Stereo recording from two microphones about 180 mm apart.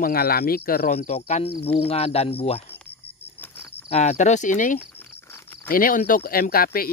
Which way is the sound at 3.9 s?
40° left (ahead or behind).